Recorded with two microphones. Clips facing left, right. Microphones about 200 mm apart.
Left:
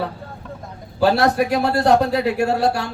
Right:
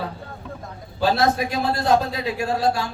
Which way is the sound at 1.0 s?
65° left (ahead or behind).